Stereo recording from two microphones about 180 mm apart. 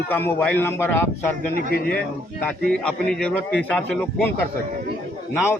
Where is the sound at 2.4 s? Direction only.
5° left (ahead or behind).